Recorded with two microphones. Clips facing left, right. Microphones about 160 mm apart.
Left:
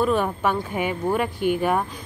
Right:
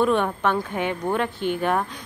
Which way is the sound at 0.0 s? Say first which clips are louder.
Right 1 dB; 5° left (ahead or behind).